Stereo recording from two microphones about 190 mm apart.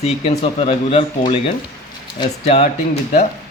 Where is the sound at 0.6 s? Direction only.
30° left (ahead or behind).